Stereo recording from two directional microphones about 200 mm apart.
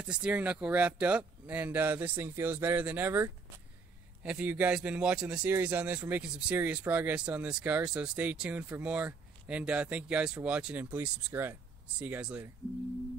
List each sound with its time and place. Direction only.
0.1 s a man's voice: 5° right (ahead or behind)